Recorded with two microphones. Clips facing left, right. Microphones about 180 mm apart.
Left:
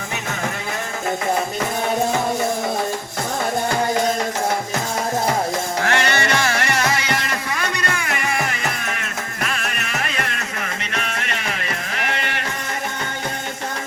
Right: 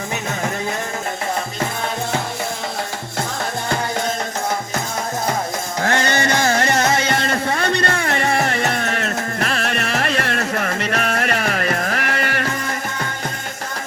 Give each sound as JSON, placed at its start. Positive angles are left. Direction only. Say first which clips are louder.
{"t": 5.9, "sound": "music", "louder": "right 2 dB", "side_deg": -20}